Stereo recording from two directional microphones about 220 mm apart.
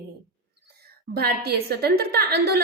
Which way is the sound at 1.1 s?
45° right (ahead or behind).